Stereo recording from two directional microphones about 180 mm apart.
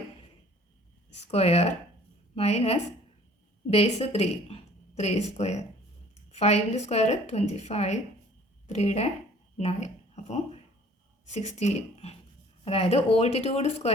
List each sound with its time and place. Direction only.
1.3 s a woman's voice: 35° left (ahead or behind)